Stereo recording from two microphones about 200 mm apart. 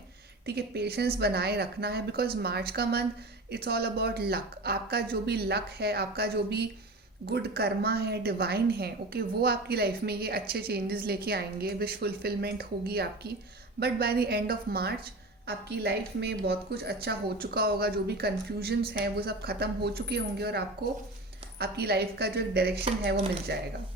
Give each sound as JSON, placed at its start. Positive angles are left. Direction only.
{"t": 0.4, "sound": "a woman's voice", "side_deg": -55}